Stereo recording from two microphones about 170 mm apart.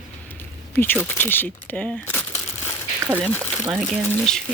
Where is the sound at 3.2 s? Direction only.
10° left (ahead or behind).